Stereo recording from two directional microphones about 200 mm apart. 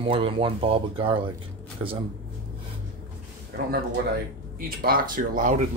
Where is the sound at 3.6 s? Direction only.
45° right (ahead or behind).